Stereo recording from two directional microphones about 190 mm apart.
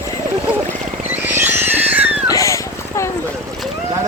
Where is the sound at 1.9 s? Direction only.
10° right (ahead or behind).